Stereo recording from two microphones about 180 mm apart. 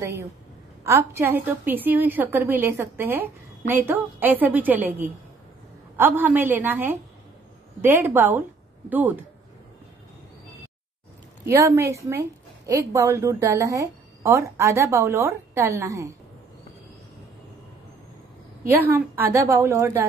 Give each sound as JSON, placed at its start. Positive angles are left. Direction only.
{"t": 0.0, "sound": "a woman's voice", "side_deg": -15}
{"t": 11.4, "sound": "a woman's voice", "side_deg": -15}
{"t": 18.9, "sound": "a woman's voice", "side_deg": -10}